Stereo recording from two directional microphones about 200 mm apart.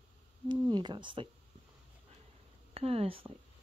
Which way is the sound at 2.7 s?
30° right (ahead or behind).